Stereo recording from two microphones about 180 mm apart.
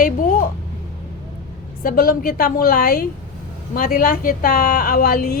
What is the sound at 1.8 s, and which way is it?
A woman's voice, 55° left (ahead or behind).